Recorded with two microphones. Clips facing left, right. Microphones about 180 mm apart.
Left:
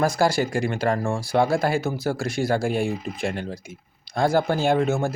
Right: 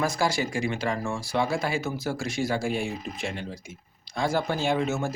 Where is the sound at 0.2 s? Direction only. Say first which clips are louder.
Left 5 dB; 55° left (ahead or behind).